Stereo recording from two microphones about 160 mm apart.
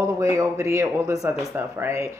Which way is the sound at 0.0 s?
20° right (ahead or behind).